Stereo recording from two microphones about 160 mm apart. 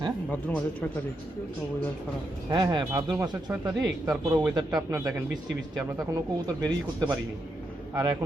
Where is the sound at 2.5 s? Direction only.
25° right (ahead or behind).